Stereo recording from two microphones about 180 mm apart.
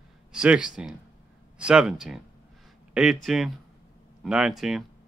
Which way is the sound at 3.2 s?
Centre (ahead or behind).